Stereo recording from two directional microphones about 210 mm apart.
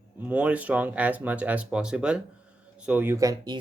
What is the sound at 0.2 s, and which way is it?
Speech, 5° right (ahead or behind).